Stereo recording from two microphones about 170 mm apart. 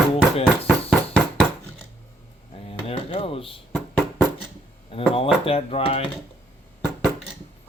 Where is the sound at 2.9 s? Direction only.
35° left (ahead or behind).